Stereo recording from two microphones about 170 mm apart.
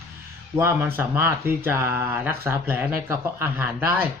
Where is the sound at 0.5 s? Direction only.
15° right (ahead or behind).